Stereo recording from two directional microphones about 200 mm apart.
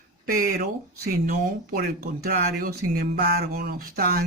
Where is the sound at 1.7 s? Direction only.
50° right (ahead or behind).